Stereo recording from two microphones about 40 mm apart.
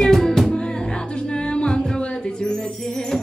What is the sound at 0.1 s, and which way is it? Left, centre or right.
Music, centre.